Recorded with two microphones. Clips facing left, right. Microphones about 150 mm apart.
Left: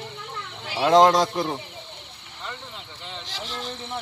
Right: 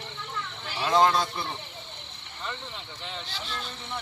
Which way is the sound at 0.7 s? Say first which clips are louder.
Left 6 dB; 75° left (ahead or behind).